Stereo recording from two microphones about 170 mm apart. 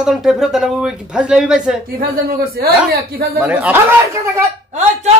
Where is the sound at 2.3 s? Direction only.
65° right (ahead or behind).